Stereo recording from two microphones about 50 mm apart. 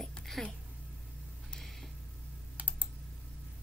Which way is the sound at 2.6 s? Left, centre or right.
Right.